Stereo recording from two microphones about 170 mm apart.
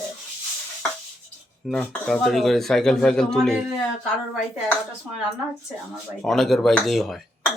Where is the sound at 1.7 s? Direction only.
5° left (ahead or behind).